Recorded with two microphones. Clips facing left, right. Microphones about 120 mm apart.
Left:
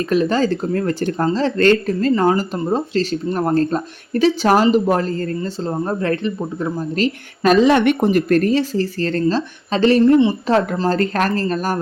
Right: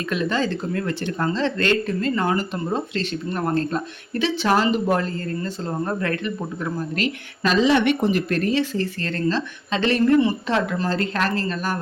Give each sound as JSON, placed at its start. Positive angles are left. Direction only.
{"t": 0.1, "sound": "speech", "side_deg": 40}
{"t": 5.4, "sound": "speech", "side_deg": 30}
{"t": 7.4, "sound": "speech", "side_deg": 50}